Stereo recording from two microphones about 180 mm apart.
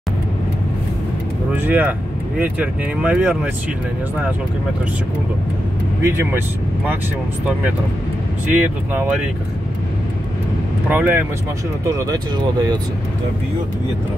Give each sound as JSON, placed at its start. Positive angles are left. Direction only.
{"t": 1.5, "sound": "speech", "side_deg": -10}
{"t": 6.0, "sound": "speech", "side_deg": -15}
{"t": 8.6, "sound": "speech", "side_deg": -10}
{"t": 10.9, "sound": "speech", "side_deg": -10}